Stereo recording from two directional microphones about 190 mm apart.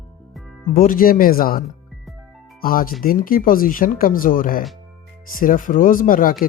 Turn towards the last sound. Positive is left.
turn(degrees=45)  # may be behind; listen again after turning